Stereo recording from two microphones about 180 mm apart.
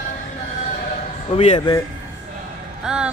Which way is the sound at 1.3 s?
30° left (ahead or behind).